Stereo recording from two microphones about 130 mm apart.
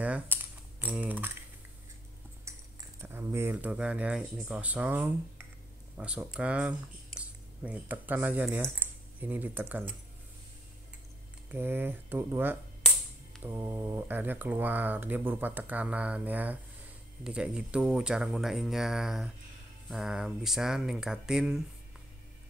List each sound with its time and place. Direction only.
0.0 s typing: 15° right (ahead or behind)
2.5 s a sound: 25° right (ahead or behind)
3.0 s speech: 15° right (ahead or behind)
11.5 s speech: 15° right (ahead or behind)